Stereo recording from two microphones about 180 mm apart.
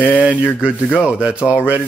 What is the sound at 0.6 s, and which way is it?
Speech, 5° right (ahead or behind).